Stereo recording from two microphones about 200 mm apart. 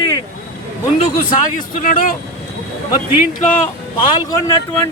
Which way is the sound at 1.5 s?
40° left (ahead or behind).